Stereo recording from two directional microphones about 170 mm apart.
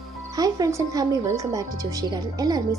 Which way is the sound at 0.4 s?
20° right (ahead or behind).